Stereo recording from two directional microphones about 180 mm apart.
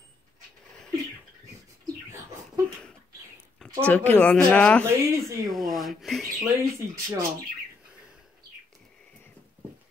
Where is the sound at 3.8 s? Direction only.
10° left (ahead or behind).